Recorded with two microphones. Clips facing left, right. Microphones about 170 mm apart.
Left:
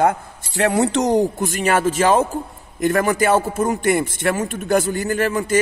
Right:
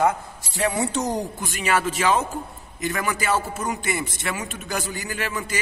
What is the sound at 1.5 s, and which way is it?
A man's voice, 50° left (ahead or behind).